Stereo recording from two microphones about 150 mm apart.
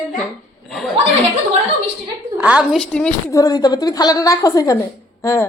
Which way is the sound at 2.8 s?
5° left (ahead or behind).